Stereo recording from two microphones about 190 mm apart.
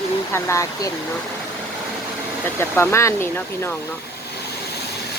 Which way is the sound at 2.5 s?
10° left (ahead or behind).